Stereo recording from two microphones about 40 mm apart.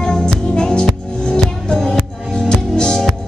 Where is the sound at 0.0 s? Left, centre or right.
Centre.